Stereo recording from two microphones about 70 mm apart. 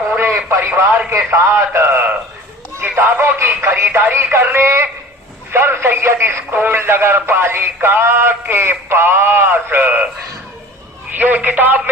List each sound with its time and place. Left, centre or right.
0.2 s radio: right
0.7 s speech: right
11.1 s a man's voice: right